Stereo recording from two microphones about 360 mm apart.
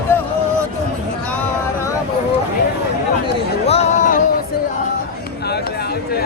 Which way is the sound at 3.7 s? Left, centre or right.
Centre.